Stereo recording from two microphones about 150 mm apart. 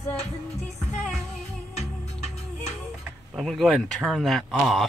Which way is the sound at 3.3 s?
Centre (ahead or behind).